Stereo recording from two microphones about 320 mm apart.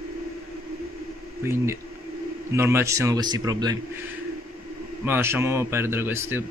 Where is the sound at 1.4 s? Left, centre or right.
Centre.